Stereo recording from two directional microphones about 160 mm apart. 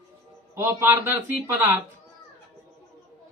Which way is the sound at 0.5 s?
15° right (ahead or behind).